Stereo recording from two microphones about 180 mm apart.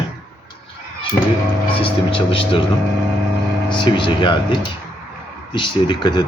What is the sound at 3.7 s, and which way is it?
Speech, 25° left (ahead or behind).